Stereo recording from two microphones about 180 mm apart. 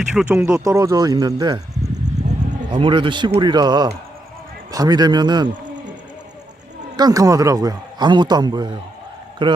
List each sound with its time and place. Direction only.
0.1 s speech: 5° right (ahead or behind)
0.6 s a man's voice: 20° right (ahead or behind)
2.2 s a sound: 40° right (ahead or behind)
2.7 s a man's voice: 30° right (ahead or behind)
6.9 s a man's voice: 20° right (ahead or behind)